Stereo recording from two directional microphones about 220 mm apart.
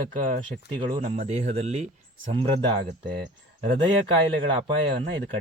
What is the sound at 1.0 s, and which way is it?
Speech, 30° right (ahead or behind).